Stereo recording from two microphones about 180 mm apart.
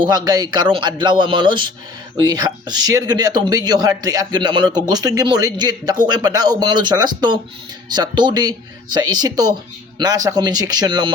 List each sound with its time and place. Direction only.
0.0 s speech: 20° right (ahead or behind)